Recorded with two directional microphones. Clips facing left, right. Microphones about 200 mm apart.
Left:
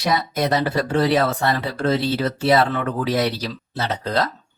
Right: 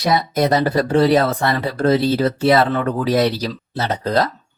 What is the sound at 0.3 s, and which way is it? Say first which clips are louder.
Speech: right 5 dB; 40° right (ahead or behind).